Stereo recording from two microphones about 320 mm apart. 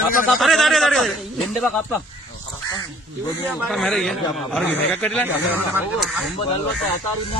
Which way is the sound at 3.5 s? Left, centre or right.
Centre.